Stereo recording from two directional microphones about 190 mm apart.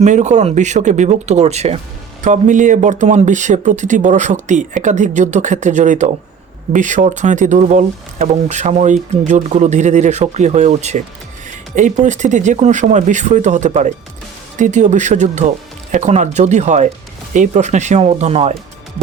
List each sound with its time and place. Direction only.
0.0 s speech: 40° right (ahead or behind)